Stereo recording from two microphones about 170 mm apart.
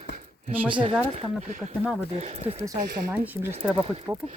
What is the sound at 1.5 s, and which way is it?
Speech, 50° right (ahead or behind).